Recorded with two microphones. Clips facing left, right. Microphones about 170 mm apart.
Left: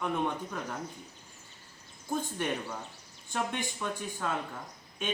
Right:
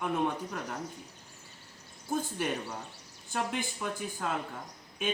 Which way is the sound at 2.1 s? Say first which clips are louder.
Even; 5° right (ahead or behind).